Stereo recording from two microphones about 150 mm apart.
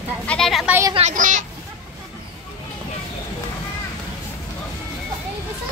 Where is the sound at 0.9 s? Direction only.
55° right (ahead or behind).